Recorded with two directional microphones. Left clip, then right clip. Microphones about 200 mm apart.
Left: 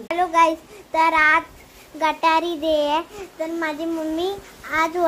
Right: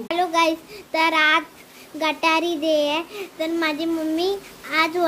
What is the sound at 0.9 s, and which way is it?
A child's voice, 10° right (ahead or behind).